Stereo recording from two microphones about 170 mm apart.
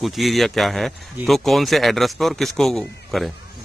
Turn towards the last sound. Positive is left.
turn(degrees=0)  # may be behind; listen again after turning